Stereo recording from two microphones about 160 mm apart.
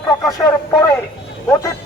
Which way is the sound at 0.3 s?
20° left (ahead or behind).